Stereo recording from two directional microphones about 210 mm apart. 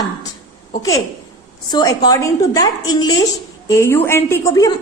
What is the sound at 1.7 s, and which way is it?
A woman's voice, 20° left (ahead or behind).